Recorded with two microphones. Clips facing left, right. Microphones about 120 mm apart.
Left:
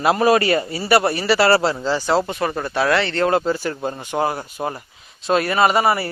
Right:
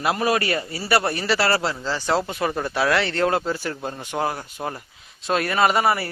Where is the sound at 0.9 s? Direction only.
10° left (ahead or behind).